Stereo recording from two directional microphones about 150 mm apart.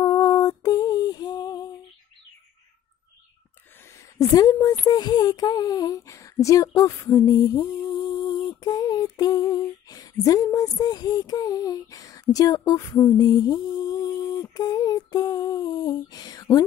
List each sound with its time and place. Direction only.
0.0 s female singing: 25° left (ahead or behind)
4.2 s speech: 25° left (ahead or behind)
8.5 s female singing: 25° left (ahead or behind)